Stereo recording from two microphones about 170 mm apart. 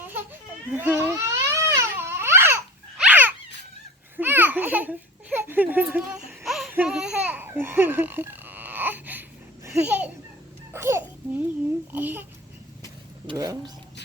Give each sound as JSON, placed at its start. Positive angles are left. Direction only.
{"t": 0.7, "sound": "crying", "side_deg": -10}
{"t": 3.0, "sound": "dog", "side_deg": -10}
{"t": 4.2, "sound": "a sound", "side_deg": -10}
{"t": 9.6, "sound": "a child's voice", "side_deg": -10}
{"t": 10.7, "sound": "babbling", "side_deg": -15}
{"t": 11.9, "sound": "speech", "side_deg": -10}
{"t": 13.2, "sound": "speech", "side_deg": -20}